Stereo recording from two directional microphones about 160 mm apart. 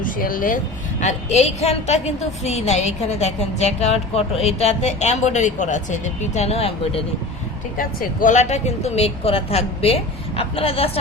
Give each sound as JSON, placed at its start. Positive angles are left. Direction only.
{"t": 0.0, "sound": "a woman's voice", "side_deg": 60}
{"t": 7.8, "sound": "a woman's voice", "side_deg": 55}